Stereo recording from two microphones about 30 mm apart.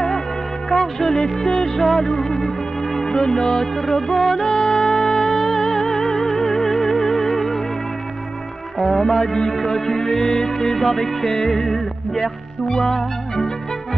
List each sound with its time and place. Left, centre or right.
0.7 s music of bollywood: centre
2.0 s music: centre
8.7 s music: centre